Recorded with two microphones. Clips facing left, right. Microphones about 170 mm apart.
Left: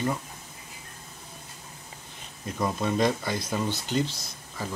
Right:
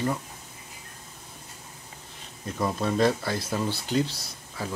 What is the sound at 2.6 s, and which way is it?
Speech, centre (ahead or behind).